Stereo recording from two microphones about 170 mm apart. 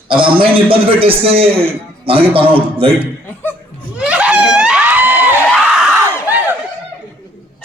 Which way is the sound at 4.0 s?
5° right (ahead or behind).